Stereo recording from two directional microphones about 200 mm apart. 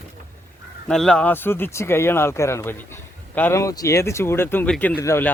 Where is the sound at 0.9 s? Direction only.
Centre (ahead or behind).